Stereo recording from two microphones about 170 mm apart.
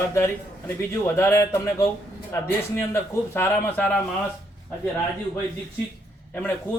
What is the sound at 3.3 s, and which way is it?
Speech, 10° left (ahead or behind).